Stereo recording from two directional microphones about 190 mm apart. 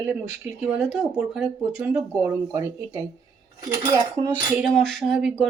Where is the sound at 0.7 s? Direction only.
Centre (ahead or behind).